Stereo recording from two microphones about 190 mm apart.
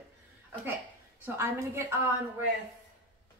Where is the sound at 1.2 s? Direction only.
10° right (ahead or behind).